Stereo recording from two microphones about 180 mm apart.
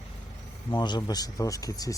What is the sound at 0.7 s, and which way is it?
Speech, 25° left (ahead or behind).